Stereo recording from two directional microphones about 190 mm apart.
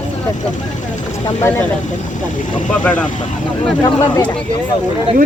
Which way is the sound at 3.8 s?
20° left (ahead or behind).